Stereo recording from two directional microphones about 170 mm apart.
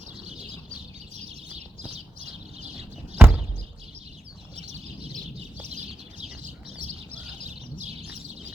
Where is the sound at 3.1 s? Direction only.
10° right (ahead or behind).